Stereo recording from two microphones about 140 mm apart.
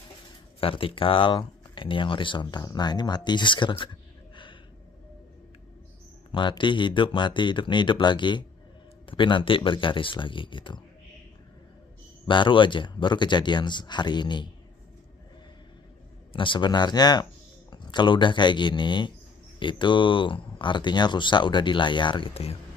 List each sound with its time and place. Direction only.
0.6 s speech: 40° left (ahead or behind)
6.3 s speech: 35° left (ahead or behind)
12.3 s speech: 35° left (ahead or behind)
16.3 s speech: 35° left (ahead or behind)